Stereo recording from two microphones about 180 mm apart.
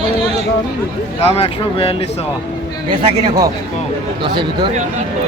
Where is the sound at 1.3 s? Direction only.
30° left (ahead or behind).